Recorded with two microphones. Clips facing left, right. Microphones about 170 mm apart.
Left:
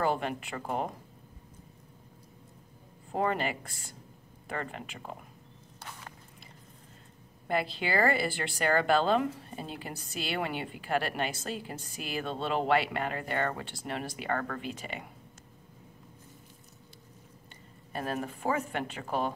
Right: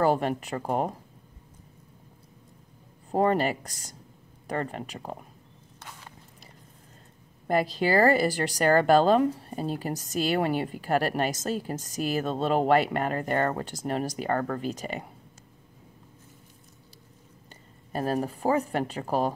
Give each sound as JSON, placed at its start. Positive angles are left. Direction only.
{"t": 0.0, "sound": "speech", "side_deg": -40}
{"t": 3.1, "sound": "speech", "side_deg": -40}
{"t": 7.4, "sound": "speech", "side_deg": -40}
{"t": 17.9, "sound": "speech", "side_deg": -40}